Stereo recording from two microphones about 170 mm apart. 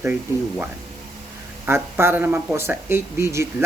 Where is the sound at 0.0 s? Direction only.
10° right (ahead or behind).